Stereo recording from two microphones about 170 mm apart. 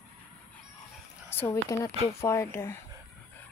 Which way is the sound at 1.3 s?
15° left (ahead or behind).